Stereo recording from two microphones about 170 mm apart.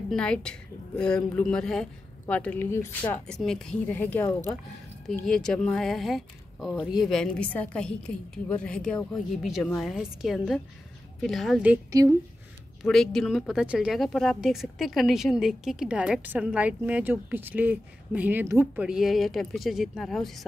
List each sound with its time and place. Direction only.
0.1 s a woman's voice: 5° left (ahead or behind)
11.9 s speech: 20° right (ahead or behind)
12.8 s a woman's voice: 5° left (ahead or behind)